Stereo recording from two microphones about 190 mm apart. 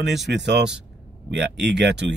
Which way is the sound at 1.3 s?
65° right (ahead or behind).